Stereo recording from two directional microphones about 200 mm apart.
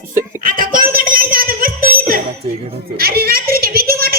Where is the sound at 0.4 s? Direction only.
45° right (ahead or behind).